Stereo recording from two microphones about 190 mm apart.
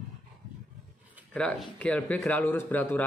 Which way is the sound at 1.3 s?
5° left (ahead or behind).